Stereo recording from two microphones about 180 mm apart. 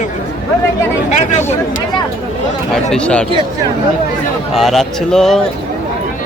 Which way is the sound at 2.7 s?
5° left (ahead or behind).